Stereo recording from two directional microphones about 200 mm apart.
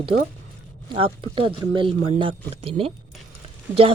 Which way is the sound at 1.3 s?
25° right (ahead or behind).